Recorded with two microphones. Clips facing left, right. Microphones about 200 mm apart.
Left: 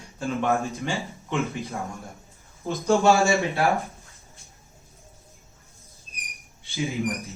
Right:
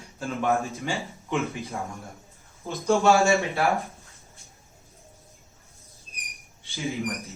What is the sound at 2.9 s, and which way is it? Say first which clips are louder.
Speech: even; centre (ahead or behind).